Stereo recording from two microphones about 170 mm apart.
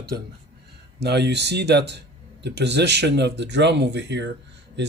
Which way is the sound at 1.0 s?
80° right.